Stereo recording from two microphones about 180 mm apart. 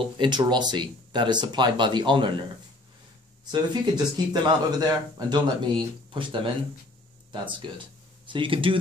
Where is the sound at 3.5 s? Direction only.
25° right (ahead or behind).